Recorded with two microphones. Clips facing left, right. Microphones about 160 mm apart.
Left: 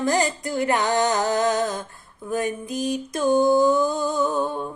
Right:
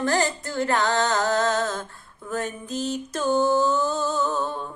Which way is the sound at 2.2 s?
10° left (ahead or behind).